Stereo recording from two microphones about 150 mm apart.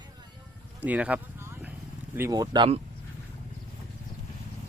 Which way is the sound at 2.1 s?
20° right (ahead or behind).